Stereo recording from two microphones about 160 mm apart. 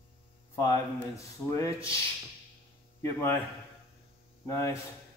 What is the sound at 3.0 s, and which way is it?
Speech, 15° left (ahead or behind).